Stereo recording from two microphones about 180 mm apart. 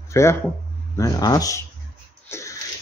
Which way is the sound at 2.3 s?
15° left (ahead or behind).